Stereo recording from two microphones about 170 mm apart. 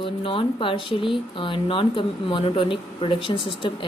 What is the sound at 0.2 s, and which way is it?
Speech, 30° left (ahead or behind).